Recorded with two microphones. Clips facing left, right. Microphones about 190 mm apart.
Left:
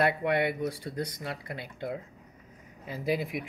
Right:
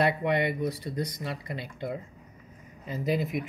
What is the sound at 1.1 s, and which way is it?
Speech, 65° left (ahead or behind).